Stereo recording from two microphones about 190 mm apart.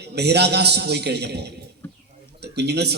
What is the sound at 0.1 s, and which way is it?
A man's voice, 60° right (ahead or behind).